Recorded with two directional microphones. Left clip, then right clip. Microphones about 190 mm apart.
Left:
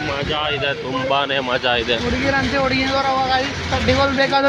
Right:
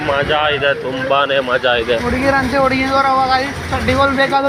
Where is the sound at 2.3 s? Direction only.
5° right (ahead or behind).